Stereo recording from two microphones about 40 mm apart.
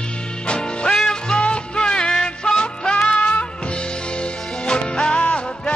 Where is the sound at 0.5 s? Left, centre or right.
Centre.